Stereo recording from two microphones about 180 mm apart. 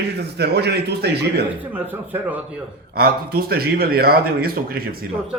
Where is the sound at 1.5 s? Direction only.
10° right (ahead or behind).